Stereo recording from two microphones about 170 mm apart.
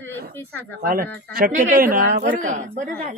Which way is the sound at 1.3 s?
55° right (ahead or behind).